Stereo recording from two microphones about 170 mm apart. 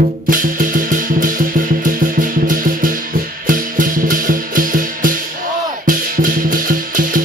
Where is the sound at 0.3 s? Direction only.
55° right (ahead or behind).